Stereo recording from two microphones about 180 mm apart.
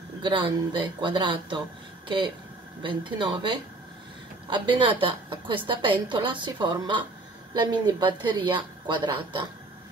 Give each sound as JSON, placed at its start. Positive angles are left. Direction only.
{"t": 0.2, "sound": "a woman's voice", "side_deg": -30}